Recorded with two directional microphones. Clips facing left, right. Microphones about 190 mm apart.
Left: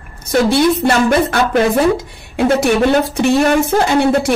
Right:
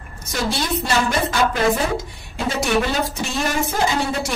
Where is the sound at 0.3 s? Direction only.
60° left (ahead or behind).